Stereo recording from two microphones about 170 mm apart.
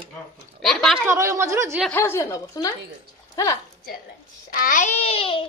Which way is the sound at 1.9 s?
15° left (ahead or behind).